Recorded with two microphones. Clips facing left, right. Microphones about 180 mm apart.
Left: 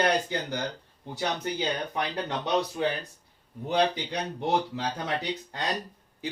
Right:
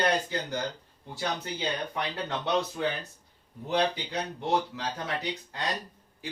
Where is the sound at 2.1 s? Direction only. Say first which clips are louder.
Left 1 dB; 20° left (ahead or behind).